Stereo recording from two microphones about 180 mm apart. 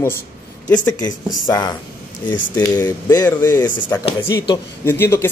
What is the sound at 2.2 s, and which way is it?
A man's voice, 10° left (ahead or behind).